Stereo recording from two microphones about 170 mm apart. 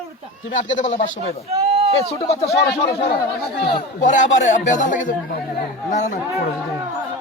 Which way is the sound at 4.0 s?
45° left (ahead or behind).